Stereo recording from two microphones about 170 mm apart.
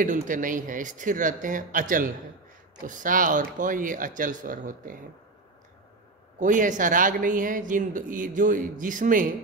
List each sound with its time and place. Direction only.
0.0 s speech: 50° right (ahead or behind)
6.4 s speech: 50° right (ahead or behind)